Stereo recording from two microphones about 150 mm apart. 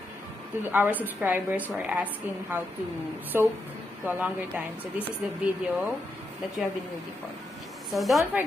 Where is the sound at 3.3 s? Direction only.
15° right (ahead or behind).